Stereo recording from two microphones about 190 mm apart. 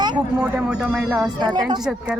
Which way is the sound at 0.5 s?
5° right (ahead or behind).